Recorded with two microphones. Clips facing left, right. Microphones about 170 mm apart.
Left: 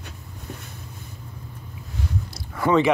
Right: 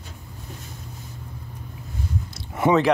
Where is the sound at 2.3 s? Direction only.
25° right (ahead or behind).